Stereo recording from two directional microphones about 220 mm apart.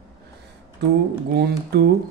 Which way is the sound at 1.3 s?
45° right (ahead or behind).